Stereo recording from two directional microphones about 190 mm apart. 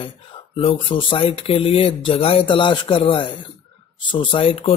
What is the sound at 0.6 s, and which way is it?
Speech, 30° left (ahead or behind).